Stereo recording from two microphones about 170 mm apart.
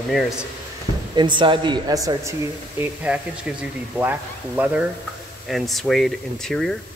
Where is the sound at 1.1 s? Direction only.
25° right (ahead or behind).